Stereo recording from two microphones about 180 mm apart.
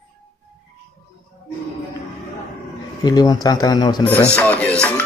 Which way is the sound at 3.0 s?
20° left (ahead or behind).